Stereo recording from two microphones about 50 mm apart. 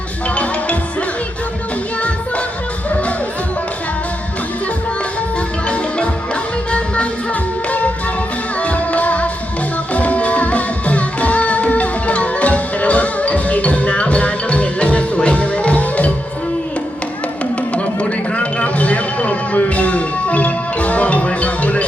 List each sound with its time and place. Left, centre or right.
2.0 s music: left
5.6 s music: left
8.6 s music: left
18.3 s music: left